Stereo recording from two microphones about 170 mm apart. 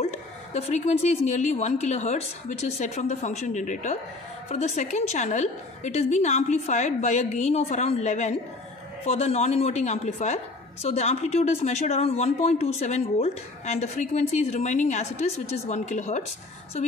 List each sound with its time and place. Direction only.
0.0 s a woman's voice: 40° left (ahead or behind)